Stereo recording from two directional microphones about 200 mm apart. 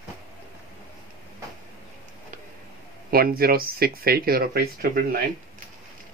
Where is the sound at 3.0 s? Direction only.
50° right (ahead or behind).